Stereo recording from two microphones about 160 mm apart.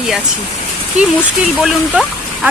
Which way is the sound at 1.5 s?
Centre (ahead or behind).